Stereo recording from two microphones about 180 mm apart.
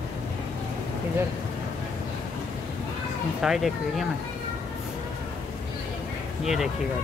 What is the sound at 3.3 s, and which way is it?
Speech, centre (ahead or behind).